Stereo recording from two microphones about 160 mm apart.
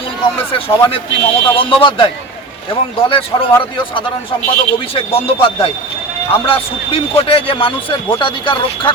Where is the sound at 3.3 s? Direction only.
25° left (ahead or behind).